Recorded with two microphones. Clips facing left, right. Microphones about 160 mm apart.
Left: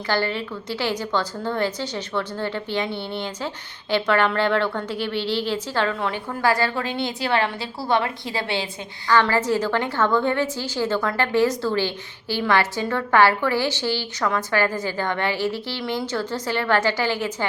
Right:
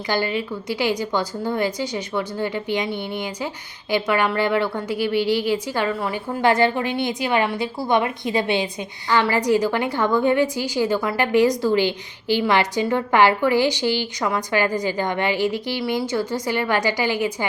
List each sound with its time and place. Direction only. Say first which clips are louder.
0.1 s a woman's voice: right 1 dB; 15° right (ahead or behind)
6.4 s a woman's voice: right 4 dB; 20° right (ahead or behind)